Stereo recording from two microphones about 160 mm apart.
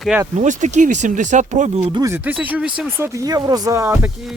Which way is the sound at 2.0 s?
15° right (ahead or behind).